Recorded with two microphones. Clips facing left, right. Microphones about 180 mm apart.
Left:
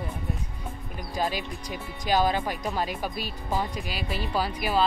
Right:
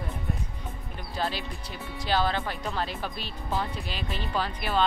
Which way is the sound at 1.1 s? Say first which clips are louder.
Left 2 dB; 15° left (ahead or behind).